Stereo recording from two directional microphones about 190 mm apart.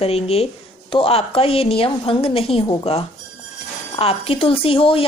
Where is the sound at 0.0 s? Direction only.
30° left (ahead or behind).